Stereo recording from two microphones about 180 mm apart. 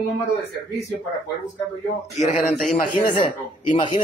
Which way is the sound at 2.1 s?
40° left (ahead or behind).